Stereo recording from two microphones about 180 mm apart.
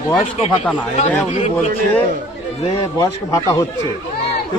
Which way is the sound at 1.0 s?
35° left (ahead or behind).